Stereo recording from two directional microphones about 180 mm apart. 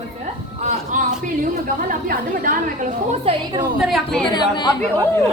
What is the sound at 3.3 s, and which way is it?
Speech, 30° right (ahead or behind).